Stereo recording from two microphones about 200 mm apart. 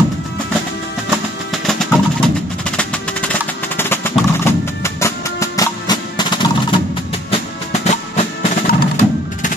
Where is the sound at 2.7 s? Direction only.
5° left (ahead or behind).